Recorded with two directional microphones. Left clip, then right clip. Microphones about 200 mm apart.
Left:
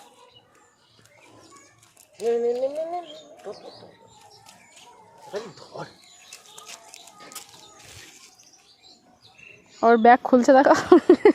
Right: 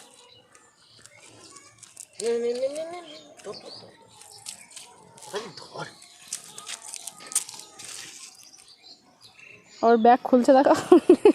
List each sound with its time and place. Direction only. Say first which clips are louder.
2.1 s speech: left 3 dB; 5° left (ahead or behind)
5.5 s speech: even; 20° left (ahead or behind)
7.9 s water: right 4 dB; 15° left (ahead or behind)
9.8 s speech: left 2 dB; centre (ahead or behind)